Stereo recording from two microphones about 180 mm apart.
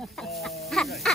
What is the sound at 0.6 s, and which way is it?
Music, centre (ahead or behind).